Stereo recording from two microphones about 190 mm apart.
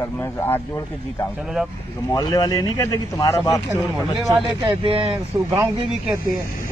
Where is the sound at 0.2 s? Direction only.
10° left (ahead or behind).